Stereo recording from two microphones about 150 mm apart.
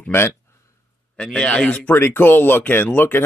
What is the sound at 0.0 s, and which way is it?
A man's voice, 15° left (ahead or behind).